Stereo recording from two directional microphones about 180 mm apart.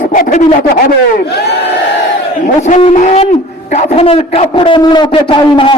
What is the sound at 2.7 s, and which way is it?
A man's voice, 40° left (ahead or behind).